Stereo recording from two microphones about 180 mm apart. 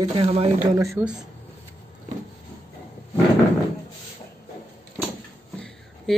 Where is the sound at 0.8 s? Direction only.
15° right (ahead or behind).